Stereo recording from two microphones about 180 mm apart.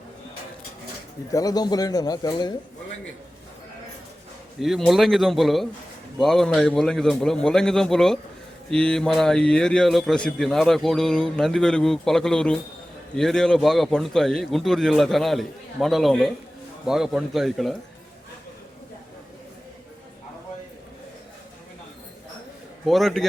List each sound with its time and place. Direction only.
1.3 s a man's voice: 20° left (ahead or behind)
4.6 s a man's voice: centre (ahead or behind)
22.9 s a man's voice: centre (ahead or behind)